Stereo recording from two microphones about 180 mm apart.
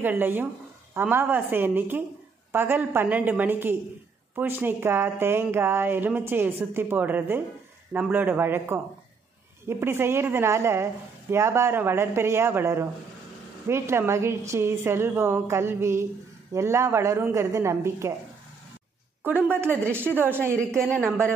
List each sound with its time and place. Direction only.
0.0 s speech: 10° right (ahead or behind)
19.2 s a woman's voice: 10° right (ahead or behind)